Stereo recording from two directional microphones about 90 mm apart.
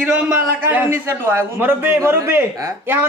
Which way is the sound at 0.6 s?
20° right (ahead or behind).